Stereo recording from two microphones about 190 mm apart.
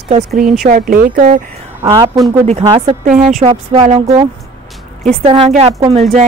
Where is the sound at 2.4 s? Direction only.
35° right (ahead or behind).